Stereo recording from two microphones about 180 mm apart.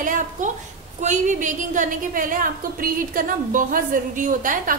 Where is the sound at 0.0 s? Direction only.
45° right (ahead or behind).